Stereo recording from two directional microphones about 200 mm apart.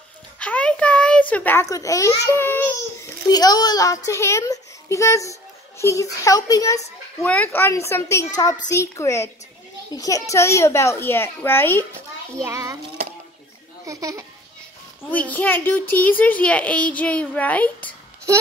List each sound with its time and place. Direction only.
0.4 s a sound: 5° left (ahead or behind)
1.3 s a child's voice: 10° left (ahead or behind)
7.2 s a child's voice: 5° left (ahead or behind)
12.4 s a child's voice: 15° right (ahead or behind)
13.8 s a child's voice: 15° right (ahead or behind)
15.0 s a child's voice: 10° left (ahead or behind)